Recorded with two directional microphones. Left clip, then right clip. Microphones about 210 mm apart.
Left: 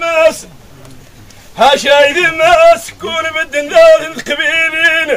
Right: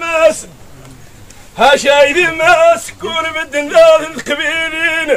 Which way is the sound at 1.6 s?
Centre (ahead or behind).